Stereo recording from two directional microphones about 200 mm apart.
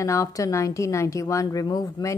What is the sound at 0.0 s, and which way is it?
A woman's voice, 15° left (ahead or behind).